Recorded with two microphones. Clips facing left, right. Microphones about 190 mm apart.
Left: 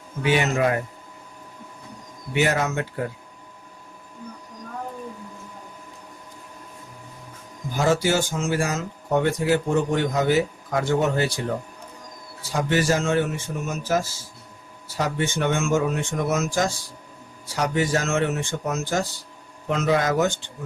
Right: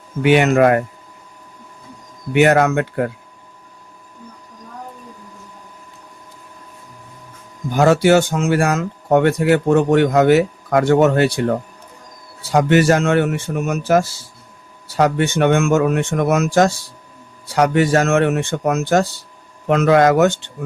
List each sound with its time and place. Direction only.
0.2 s speech: 65° right (ahead or behind)
2.3 s speech: 65° right (ahead or behind)
7.7 s speech: 65° right (ahead or behind)